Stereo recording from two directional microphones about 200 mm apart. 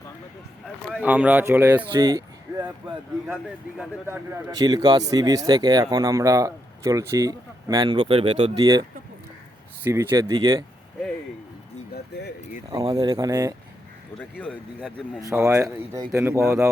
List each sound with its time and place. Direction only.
0.9 s speech: 5° right (ahead or behind)
1.8 s speech: 20° right (ahead or behind)
4.5 s speech: 20° right (ahead or behind)
12.7 s speech: 25° right (ahead or behind)
14.2 s a man's voice: 5° left (ahead or behind)
15.3 s speech: 15° right (ahead or behind)